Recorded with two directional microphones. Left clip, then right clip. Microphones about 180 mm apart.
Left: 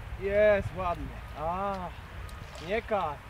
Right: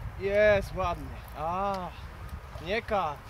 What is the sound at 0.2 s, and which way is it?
Speech, 45° right (ahead or behind).